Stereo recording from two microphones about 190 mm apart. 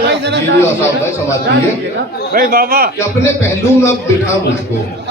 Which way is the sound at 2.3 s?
50° right (ahead or behind).